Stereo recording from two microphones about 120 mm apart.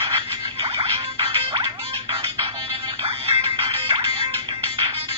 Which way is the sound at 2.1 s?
50° right (ahead or behind).